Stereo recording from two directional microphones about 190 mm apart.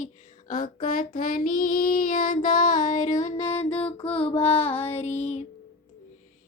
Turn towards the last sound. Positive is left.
turn(degrees=35)  # may be behind; listen again after turning